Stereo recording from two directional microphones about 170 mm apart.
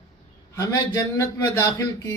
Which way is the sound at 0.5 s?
20° left (ahead or behind).